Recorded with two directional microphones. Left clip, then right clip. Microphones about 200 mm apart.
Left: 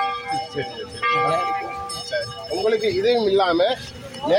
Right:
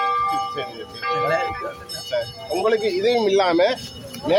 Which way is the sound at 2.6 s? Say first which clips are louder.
Even; 20° left (ahead or behind).